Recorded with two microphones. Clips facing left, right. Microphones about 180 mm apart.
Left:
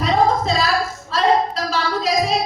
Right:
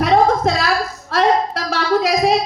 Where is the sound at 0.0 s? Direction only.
60° right (ahead or behind).